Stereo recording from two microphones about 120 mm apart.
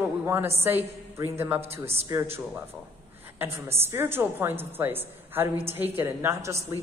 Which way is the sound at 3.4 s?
20° right (ahead or behind).